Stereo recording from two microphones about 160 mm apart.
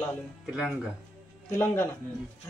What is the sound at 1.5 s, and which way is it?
Speech, 15° left (ahead or behind).